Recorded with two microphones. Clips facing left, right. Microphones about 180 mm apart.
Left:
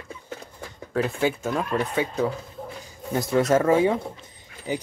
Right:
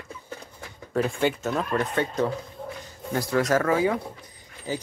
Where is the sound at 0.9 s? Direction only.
5° left (ahead or behind).